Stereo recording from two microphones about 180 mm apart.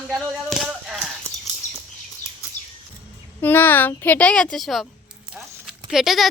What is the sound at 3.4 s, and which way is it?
A child's voice, 10° left (ahead or behind).